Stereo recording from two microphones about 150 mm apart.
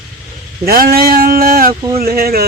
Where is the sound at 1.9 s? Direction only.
90° right.